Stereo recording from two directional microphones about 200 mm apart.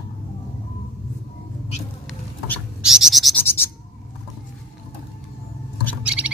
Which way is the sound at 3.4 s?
10° left (ahead or behind).